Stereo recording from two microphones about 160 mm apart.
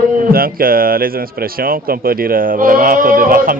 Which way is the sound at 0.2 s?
65° right (ahead or behind).